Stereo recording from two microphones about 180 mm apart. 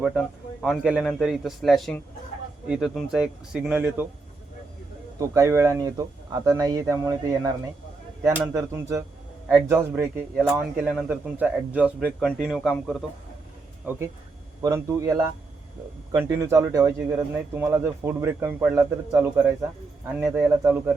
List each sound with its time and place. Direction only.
0.0 s a man's voice: centre (ahead or behind)
5.2 s a man's voice: 15° right (ahead or behind)